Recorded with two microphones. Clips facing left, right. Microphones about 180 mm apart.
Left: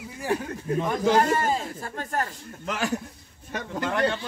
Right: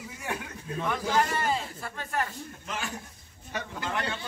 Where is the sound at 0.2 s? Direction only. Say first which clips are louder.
Left 9 dB; 35° left (ahead or behind).